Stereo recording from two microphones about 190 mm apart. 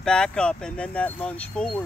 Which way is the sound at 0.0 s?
5° left (ahead or behind).